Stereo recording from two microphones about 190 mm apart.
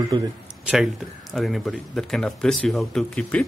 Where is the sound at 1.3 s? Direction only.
Centre (ahead or behind).